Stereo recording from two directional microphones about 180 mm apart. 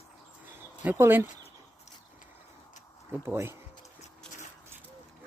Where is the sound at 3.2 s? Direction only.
15° right (ahead or behind).